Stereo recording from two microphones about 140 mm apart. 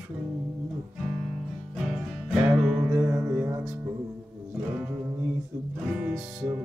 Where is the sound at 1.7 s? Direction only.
5° right (ahead or behind).